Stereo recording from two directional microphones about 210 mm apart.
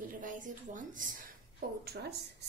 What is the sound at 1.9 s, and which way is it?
Speech, 50° right (ahead or behind).